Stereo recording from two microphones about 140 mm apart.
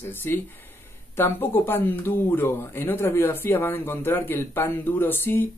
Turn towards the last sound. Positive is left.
turn(degrees=15)  # may be behind; listen again after turning